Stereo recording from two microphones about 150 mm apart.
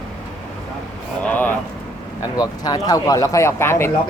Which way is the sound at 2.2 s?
25° left (ahead or behind).